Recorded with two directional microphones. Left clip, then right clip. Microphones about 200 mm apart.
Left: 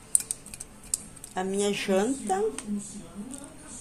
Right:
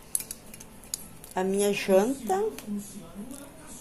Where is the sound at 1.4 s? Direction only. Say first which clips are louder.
Right 2 dB; 10° right (ahead or behind).